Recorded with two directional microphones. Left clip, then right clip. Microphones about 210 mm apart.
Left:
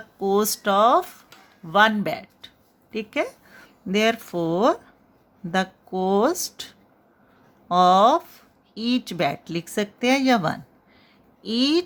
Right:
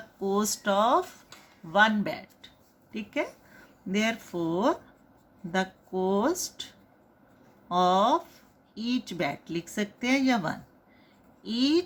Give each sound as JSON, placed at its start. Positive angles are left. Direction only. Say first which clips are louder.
{"t": 0.2, "sound": "speech", "louder": "left 7 dB", "side_deg": 35}